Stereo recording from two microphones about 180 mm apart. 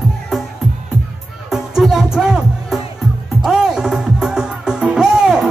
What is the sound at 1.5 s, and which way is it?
Music, centre (ahead or behind).